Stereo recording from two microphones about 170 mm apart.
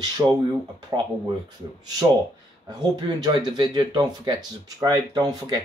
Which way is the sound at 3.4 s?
25° right (ahead or behind).